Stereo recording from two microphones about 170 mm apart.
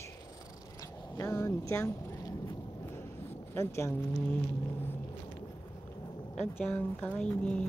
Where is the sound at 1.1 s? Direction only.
15° left (ahead or behind).